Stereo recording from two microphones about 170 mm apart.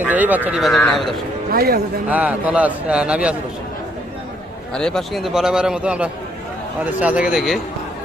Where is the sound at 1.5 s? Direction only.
65° right (ahead or behind).